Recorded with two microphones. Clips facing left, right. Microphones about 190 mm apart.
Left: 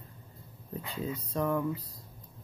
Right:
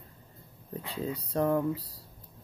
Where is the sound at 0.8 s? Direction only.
35° right (ahead or behind).